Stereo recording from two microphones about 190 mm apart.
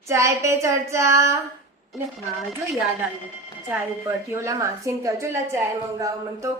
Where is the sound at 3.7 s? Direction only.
15° right (ahead or behind).